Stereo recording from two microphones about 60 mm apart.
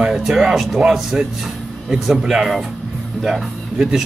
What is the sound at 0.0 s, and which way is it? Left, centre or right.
A man's voice, centre.